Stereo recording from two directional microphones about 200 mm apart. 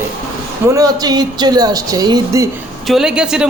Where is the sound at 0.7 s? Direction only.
20° right (ahead or behind).